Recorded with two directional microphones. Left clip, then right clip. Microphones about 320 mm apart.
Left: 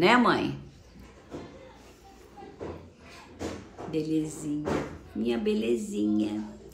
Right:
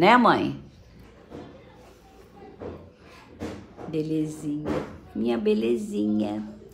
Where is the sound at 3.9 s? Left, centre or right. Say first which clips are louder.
Right 2 dB; centre.